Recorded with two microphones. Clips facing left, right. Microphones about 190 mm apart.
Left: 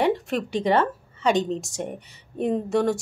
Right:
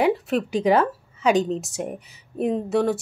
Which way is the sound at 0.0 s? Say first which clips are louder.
Right 2 dB; 5° right (ahead or behind).